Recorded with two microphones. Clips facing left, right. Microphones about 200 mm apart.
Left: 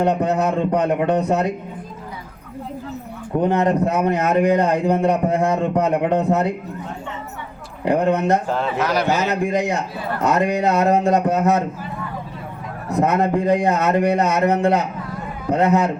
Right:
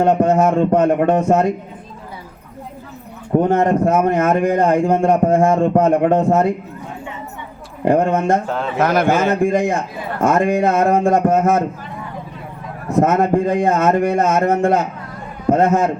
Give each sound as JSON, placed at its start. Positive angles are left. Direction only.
{"t": 0.0, "sound": "a man's voice", "side_deg": -50}
{"t": 3.5, "sound": "a man's voice", "side_deg": -50}
{"t": 7.9, "sound": "a man's voice", "side_deg": -50}
{"t": 8.4, "sound": "a man's voice", "side_deg": 0}
{"t": 8.8, "sound": "a man's voice", "side_deg": -50}
{"t": 13.0, "sound": "a man's voice", "side_deg": -50}